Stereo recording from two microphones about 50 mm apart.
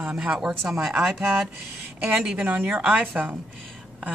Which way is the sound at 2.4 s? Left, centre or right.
Right.